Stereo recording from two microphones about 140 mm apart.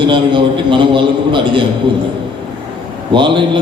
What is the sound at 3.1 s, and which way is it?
Speech, 35° right (ahead or behind).